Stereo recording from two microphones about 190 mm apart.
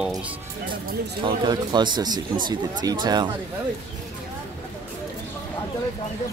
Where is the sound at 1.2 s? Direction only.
25° right (ahead or behind).